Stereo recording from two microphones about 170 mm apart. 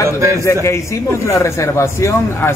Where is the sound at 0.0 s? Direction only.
15° right (ahead or behind).